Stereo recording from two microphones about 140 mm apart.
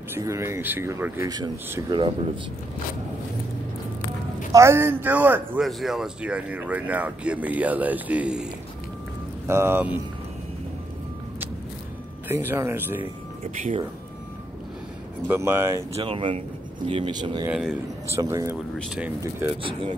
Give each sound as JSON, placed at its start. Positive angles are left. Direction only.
{"t": 0.1, "sound": "speech", "side_deg": -20}
{"t": 1.9, "sound": "speech", "side_deg": -35}
{"t": 4.5, "sound": "speech", "side_deg": -20}
{"t": 5.6, "sound": "speech", "side_deg": 0}
{"t": 9.5, "sound": "speech", "side_deg": -15}
{"t": 12.3, "sound": "speech", "side_deg": -15}
{"t": 15.2, "sound": "speech", "side_deg": -15}
{"t": 16.0, "sound": "speech", "side_deg": -35}
{"t": 17.5, "sound": "a man's voice", "side_deg": -5}
{"t": 18.1, "sound": "speech", "side_deg": -20}